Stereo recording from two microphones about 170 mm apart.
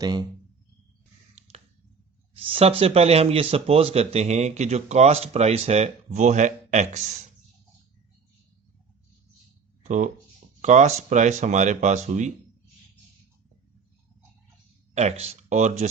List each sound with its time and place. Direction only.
0.0 s speech: 25° right (ahead or behind)
2.3 s speech: 35° right (ahead or behind)
9.8 s speech: 45° right (ahead or behind)
14.9 s speech: 40° right (ahead or behind)